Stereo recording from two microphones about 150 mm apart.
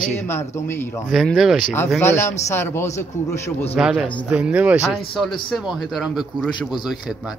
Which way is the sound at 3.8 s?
5° right (ahead or behind).